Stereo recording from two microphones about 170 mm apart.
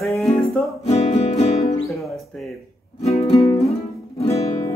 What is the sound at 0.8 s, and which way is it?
Music, 40° left (ahead or behind).